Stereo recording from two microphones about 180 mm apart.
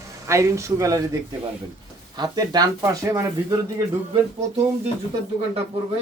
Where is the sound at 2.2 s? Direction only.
20° right (ahead or behind).